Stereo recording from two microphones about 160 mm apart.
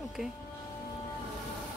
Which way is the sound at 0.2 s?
Centre (ahead or behind).